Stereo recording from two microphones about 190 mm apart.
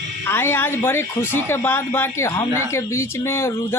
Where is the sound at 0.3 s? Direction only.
10° left (ahead or behind).